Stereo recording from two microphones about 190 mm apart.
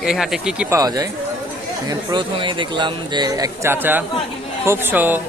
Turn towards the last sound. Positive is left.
turn(degrees=-10)  # may be behind; listen again after turning